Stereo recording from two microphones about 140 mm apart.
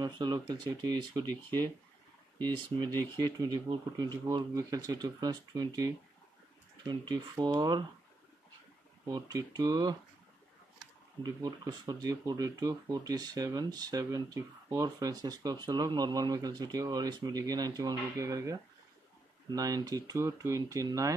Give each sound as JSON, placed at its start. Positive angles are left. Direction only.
{"t": 0.0, "sound": "speech", "side_deg": -30}
{"t": 2.4, "sound": "speech", "side_deg": -30}
{"t": 9.0, "sound": "speech", "side_deg": -25}